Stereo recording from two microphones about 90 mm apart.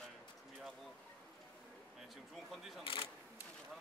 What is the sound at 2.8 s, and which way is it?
Camera, 85° left.